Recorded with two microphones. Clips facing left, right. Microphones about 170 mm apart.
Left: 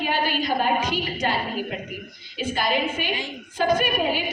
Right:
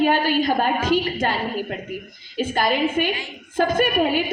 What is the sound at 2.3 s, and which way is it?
A woman's voice, 50° right (ahead or behind).